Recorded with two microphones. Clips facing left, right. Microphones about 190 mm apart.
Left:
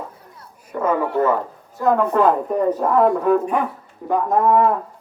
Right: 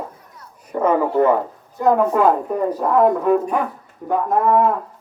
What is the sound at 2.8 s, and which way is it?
Speech, centre (ahead or behind).